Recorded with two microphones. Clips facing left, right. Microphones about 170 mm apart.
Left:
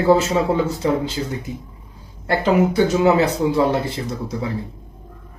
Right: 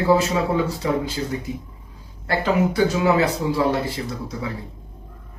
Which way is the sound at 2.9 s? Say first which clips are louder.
Left 3 dB; 25° left (ahead or behind).